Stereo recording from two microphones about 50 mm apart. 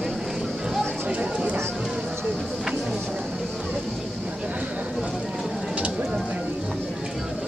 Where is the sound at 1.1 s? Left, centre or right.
Right.